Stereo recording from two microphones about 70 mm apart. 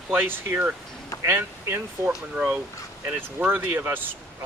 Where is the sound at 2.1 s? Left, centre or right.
Centre.